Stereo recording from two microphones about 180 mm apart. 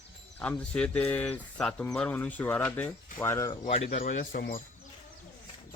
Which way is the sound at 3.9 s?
50° left (ahead or behind).